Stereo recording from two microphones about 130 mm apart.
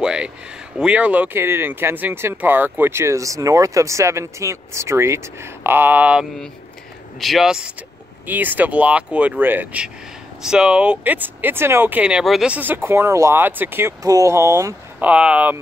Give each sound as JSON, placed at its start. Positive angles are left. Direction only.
{"t": 0.0, "sound": "a sound", "side_deg": -5}
{"t": 0.7, "sound": "speech", "side_deg": -10}
{"t": 15.0, "sound": "speech", "side_deg": -10}